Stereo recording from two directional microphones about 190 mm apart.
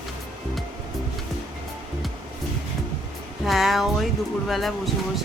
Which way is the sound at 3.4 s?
Centre (ahead or behind).